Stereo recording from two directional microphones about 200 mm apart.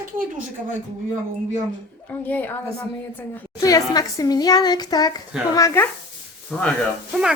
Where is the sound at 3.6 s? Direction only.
15° left (ahead or behind).